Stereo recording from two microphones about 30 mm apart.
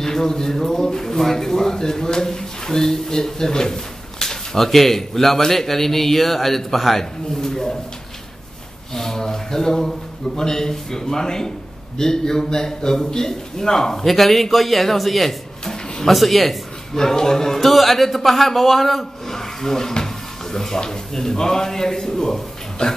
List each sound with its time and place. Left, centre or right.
0.0 s speech: centre
7.3 s a sound: centre
8.9 s a man's voice: centre
14.0 s a man's voice: centre
15.6 s a sound: centre
16.1 s a man's voice: centre
16.9 s a man's voice: centre
17.6 s a man's voice: centre